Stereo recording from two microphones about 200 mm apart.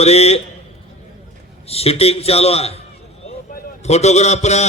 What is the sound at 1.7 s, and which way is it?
A man's voice, 30° left (ahead or behind).